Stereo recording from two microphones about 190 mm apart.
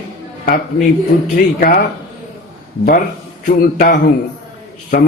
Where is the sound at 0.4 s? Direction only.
50° left (ahead or behind).